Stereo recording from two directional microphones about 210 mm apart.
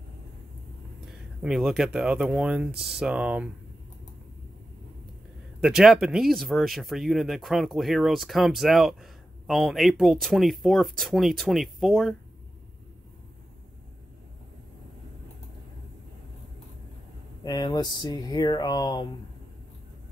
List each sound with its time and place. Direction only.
1.0 s speech: centre (ahead or behind)
5.6 s speech: centre (ahead or behind)
17.5 s speech: 20° left (ahead or behind)